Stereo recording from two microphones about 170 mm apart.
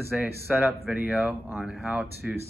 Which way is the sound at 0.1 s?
5° right (ahead or behind).